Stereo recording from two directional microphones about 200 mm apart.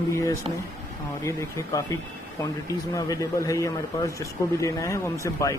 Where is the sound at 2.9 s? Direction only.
15° left (ahead or behind).